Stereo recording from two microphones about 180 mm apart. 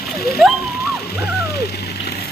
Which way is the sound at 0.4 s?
Centre (ahead or behind).